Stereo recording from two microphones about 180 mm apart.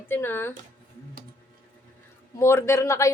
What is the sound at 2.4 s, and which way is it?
Speech, 15° left (ahead or behind).